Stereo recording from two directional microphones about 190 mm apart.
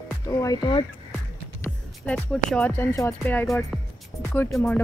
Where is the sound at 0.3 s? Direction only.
20° left (ahead or behind).